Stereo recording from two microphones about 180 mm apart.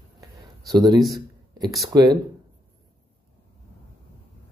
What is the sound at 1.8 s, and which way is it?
Speech, 20° right (ahead or behind).